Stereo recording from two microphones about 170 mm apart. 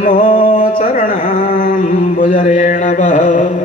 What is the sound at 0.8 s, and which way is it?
Speech, 55° left (ahead or behind).